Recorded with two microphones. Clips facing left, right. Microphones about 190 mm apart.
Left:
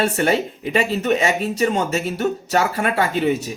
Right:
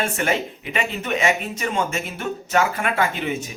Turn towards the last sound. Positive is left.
turn(degrees=40)  # may be behind; listen again after turning